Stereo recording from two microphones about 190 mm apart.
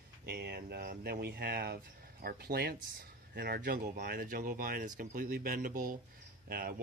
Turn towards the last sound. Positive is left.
turn(degrees=-50)  # may be behind; listen again after turning